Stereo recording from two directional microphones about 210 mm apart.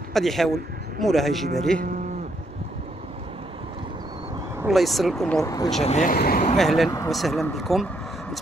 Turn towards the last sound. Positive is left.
turn(degrees=0)  # may be behind; listen again after turning